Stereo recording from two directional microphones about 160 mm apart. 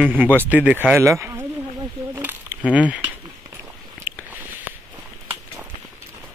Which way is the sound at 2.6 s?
10° right (ahead or behind).